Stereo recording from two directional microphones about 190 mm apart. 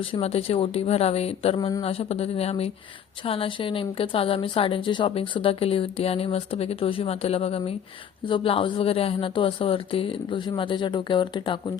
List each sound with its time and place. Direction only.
0.0 s speech: 30° left (ahead or behind)